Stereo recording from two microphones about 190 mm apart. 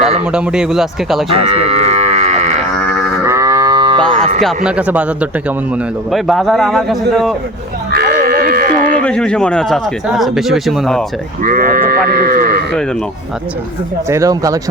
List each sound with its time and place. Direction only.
0.3 s speech: 5° right (ahead or behind)
1.3 s livestock: 30° right (ahead or behind)
3.2 s moo: 15° right (ahead or behind)
4.4 s speech: centre (ahead or behind)
7.9 s sheep: 55° right (ahead or behind)
9.0 s speech: 5° left (ahead or behind)
11.4 s sheep: 50° right (ahead or behind)
14.1 s speech: 15° right (ahead or behind)